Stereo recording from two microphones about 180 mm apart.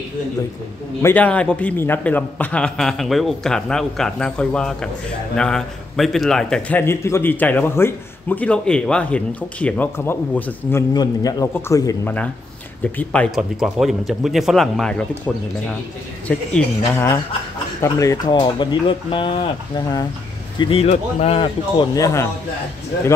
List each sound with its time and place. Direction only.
1.0 s a man's voice: 10° left (ahead or behind)
12.8 s a man's voice: 10° left (ahead or behind)
16.3 s a man's voice: 10° left (ahead or behind)